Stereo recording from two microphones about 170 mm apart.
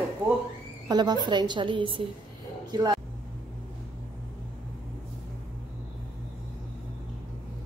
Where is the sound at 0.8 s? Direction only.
25° right (ahead or behind).